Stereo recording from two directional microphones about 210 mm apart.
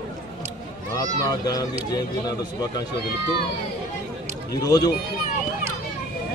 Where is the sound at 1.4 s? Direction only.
20° left (ahead or behind).